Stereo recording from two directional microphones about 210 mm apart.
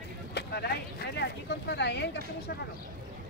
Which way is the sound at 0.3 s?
50° left (ahead or behind).